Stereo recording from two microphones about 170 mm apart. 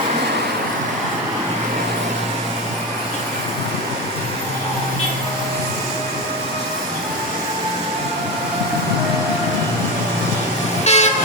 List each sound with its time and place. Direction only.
10.8 s toot: 40° left (ahead or behind)